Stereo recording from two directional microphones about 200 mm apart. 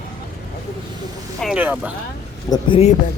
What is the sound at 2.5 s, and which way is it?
Speech, 30° left (ahead or behind).